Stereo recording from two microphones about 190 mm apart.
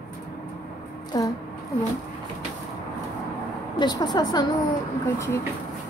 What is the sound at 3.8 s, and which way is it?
Speech, 20° left (ahead or behind).